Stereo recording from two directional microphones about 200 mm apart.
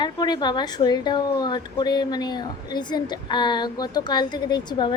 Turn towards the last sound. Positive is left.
turn(degrees=20)  # may be behind; listen again after turning